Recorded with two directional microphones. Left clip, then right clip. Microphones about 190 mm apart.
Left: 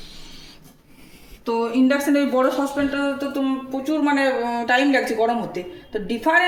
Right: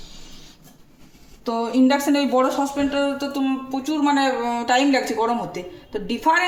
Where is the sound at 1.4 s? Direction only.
40° right (ahead or behind).